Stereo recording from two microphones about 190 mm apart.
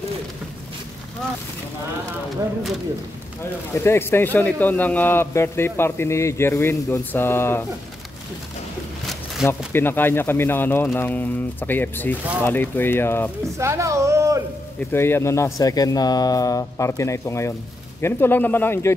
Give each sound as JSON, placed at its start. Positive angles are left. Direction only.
{"t": 3.7, "sound": "a man's voice", "side_deg": 15}
{"t": 9.7, "sound": "a man's voice", "side_deg": 10}
{"t": 13.6, "sound": "speech", "side_deg": -15}
{"t": 14.9, "sound": "a man's voice", "side_deg": 10}